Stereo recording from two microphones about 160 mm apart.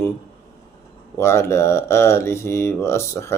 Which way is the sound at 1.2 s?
15° left (ahead or behind).